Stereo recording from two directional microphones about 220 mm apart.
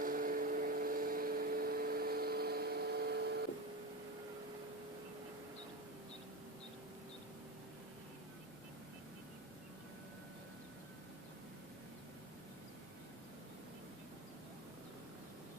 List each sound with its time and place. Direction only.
0.0 s vehicle: 40° right (ahead or behind)